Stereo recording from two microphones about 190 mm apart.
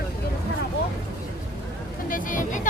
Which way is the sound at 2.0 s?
45° left (ahead or behind).